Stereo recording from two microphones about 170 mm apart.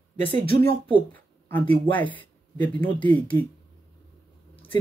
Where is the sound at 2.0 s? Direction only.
10° left (ahead or behind).